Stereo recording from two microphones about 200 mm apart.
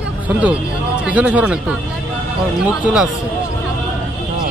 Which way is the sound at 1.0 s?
5° right (ahead or behind).